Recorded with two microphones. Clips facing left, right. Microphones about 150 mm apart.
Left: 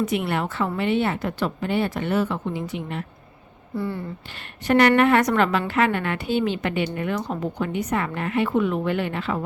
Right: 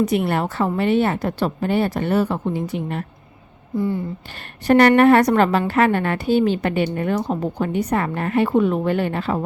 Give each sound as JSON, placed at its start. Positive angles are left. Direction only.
{"t": 0.0, "sound": "a woman's voice", "side_deg": -40}
{"t": 3.8, "sound": "speech", "side_deg": -15}
{"t": 4.6, "sound": "a woman's voice", "side_deg": -40}